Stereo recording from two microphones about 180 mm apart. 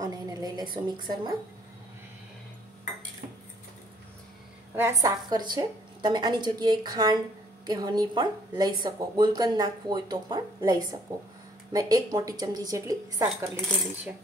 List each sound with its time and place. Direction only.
0.0 s speech: 20° right (ahead or behind)
4.7 s speech: 15° right (ahead or behind)